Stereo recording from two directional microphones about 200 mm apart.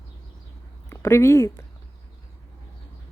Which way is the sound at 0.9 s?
15° left (ahead or behind).